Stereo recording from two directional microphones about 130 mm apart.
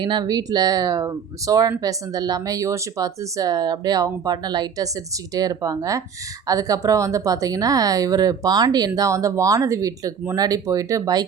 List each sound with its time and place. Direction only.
0.0 s speech: 35° right (ahead or behind)